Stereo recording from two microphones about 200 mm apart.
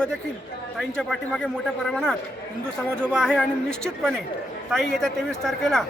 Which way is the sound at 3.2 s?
5° left (ahead or behind).